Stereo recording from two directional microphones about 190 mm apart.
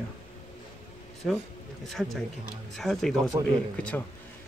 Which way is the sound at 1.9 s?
Centre (ahead or behind).